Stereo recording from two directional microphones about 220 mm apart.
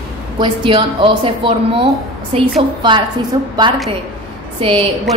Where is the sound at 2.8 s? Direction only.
20° right (ahead or behind).